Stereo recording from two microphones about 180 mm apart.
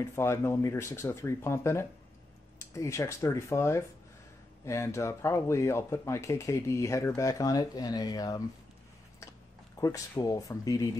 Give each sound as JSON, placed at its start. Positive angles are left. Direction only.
{"t": 0.0, "sound": "speech", "side_deg": 15}
{"t": 9.8, "sound": "speech", "side_deg": 20}